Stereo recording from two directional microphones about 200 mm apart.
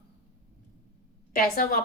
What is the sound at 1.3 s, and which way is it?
Speech, 45° left (ahead or behind).